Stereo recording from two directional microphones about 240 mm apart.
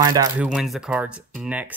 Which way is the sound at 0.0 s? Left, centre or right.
Centre.